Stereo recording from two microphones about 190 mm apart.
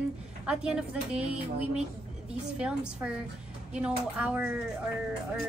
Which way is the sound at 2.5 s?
5° right (ahead or behind).